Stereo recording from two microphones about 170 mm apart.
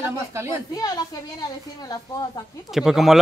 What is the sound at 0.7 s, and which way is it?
A woman's voice, 20° left (ahead or behind).